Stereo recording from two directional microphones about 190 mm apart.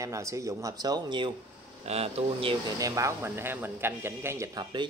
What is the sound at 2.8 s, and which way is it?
Speech, 15° right (ahead or behind).